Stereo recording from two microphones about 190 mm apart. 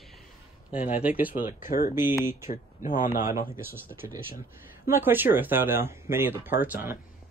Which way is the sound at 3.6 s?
10° right (ahead or behind).